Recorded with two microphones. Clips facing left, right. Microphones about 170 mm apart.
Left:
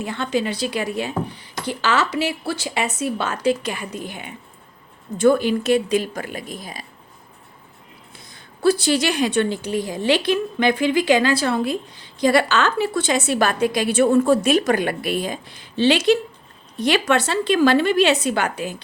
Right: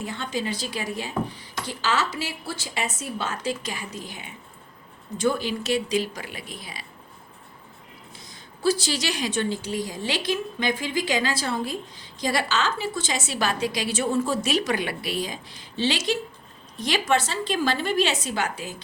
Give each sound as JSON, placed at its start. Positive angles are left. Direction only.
{"t": 0.0, "sound": "a woman's voice", "side_deg": 70}
{"t": 8.3, "sound": "a woman's voice", "side_deg": 60}